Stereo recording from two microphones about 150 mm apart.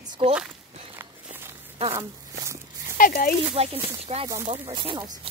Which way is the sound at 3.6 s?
40° right (ahead or behind).